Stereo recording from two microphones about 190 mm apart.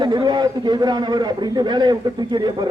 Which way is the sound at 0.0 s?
20° right (ahead or behind).